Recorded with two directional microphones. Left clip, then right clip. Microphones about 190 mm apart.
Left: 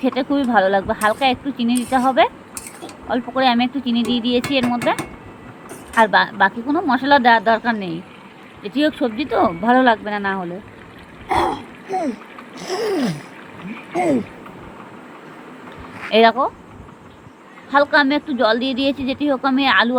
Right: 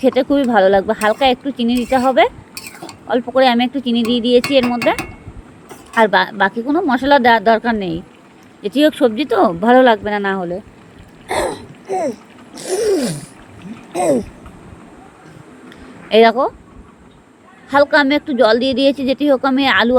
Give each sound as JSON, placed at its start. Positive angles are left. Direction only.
{"t": 0.0, "sound": "speech", "side_deg": -45}
{"t": 11.9, "sound": "speech", "side_deg": -25}
{"t": 12.5, "sound": "gasp", "side_deg": -50}
{"t": 16.0, "sound": "speech", "side_deg": -50}
{"t": 17.7, "sound": "speech", "side_deg": -50}